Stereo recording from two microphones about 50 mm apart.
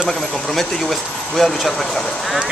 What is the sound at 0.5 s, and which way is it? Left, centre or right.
Speech, centre.